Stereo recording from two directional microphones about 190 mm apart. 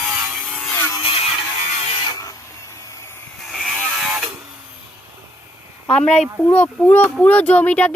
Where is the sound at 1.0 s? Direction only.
30° left (ahead or behind).